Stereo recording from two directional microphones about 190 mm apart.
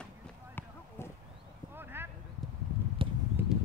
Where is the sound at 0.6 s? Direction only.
10° left (ahead or behind).